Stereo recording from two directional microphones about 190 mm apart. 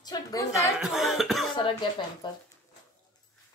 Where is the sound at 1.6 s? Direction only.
25° left (ahead or behind).